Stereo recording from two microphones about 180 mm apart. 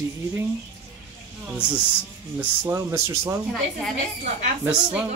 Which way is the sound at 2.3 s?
15° right (ahead or behind).